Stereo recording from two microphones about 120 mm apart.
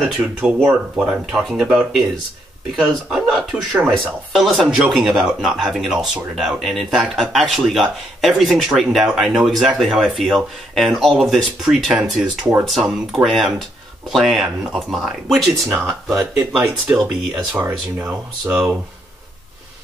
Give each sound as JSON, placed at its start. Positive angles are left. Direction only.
{"t": 0.2, "sound": "speech", "side_deg": -10}
{"t": 16.1, "sound": "speech", "side_deg": -25}
{"t": 16.5, "sound": "speech", "side_deg": -15}